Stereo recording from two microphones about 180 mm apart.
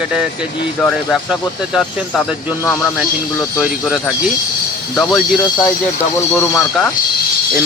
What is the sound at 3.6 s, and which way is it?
Speech, centre (ahead or behind).